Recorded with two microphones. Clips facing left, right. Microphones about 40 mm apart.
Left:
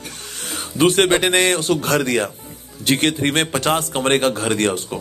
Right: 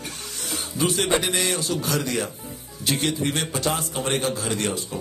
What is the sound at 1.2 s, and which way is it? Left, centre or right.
A man's voice, left.